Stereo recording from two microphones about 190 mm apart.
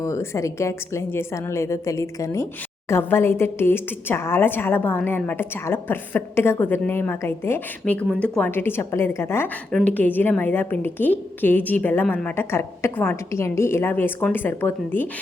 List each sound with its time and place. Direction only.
0.0 s a woman's voice: 15° left (ahead or behind)